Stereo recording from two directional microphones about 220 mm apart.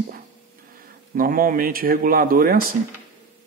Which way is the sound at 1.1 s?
40° right (ahead or behind).